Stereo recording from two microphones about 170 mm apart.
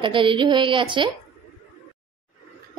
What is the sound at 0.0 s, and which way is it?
A woman's voice, 30° right (ahead or behind).